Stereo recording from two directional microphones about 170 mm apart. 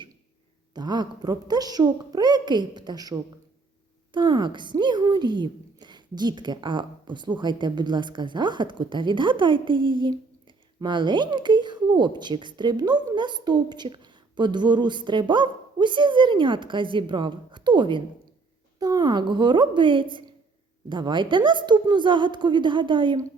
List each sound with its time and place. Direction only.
0.7 s speech: 25° right (ahead or behind)